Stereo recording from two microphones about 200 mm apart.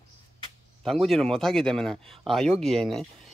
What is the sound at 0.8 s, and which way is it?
Speech, centre (ahead or behind).